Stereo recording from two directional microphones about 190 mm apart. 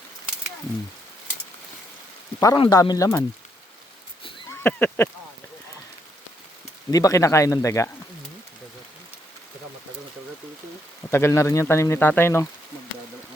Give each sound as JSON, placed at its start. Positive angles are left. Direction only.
{"t": 2.4, "sound": "speech", "side_deg": 20}
{"t": 4.4, "sound": "speech", "side_deg": 10}
{"t": 6.9, "sound": "speech", "side_deg": 15}
{"t": 11.1, "sound": "speech", "side_deg": 15}